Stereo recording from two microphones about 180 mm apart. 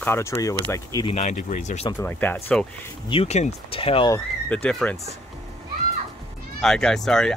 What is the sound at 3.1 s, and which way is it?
Speech, 35° left (ahead or behind).